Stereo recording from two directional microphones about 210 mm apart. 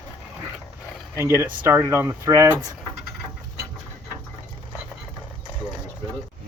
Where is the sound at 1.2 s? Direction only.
15° right (ahead or behind).